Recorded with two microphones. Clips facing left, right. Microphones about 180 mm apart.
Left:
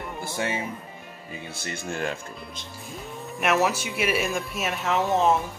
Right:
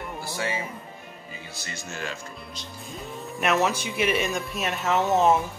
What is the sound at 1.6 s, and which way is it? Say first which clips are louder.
Speech: left 6 dB; 55° left (ahead or behind).